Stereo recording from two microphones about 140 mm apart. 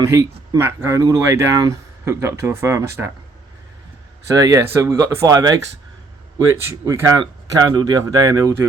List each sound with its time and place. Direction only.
0.0 s speech: 25° right (ahead or behind)
4.3 s speech: 25° right (ahead or behind)
7.2 s speech: 30° right (ahead or behind)